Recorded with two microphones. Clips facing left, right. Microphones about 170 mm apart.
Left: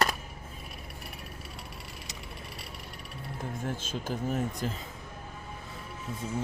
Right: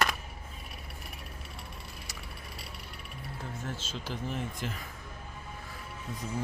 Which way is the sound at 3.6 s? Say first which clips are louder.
Left 5 dB; 50° left (ahead or behind).